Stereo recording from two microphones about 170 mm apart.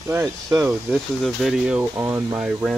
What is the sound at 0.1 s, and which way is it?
Speech, 15° right (ahead or behind).